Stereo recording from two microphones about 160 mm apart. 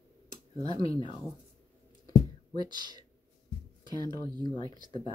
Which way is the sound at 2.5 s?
25° right (ahead or behind).